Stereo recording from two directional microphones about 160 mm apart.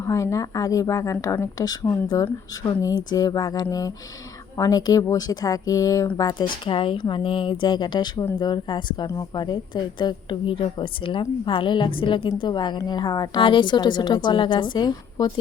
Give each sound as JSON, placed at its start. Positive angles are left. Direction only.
{"t": 0.0, "sound": "speech", "side_deg": 20}